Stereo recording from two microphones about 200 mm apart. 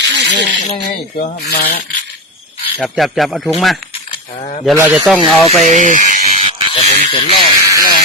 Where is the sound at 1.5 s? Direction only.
50° left (ahead or behind).